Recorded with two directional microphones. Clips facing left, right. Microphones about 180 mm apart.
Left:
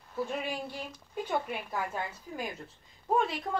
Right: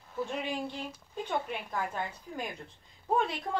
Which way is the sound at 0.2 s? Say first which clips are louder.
Even; 10° left (ahead or behind).